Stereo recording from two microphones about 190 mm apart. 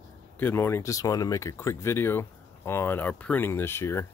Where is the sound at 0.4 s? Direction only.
10° left (ahead or behind).